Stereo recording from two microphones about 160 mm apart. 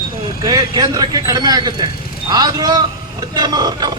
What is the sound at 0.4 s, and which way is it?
Speech, 25° right (ahead or behind).